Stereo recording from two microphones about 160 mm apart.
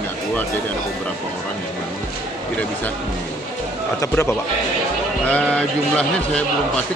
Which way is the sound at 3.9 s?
15° left (ahead or behind).